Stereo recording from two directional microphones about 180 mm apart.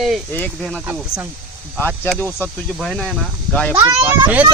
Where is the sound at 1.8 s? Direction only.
5° left (ahead or behind).